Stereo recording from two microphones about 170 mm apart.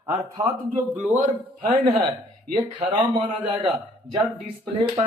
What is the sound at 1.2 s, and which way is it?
Speech, 50° right (ahead or behind).